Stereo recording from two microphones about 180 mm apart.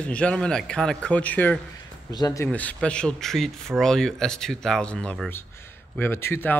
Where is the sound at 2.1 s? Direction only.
20° left (ahead or behind).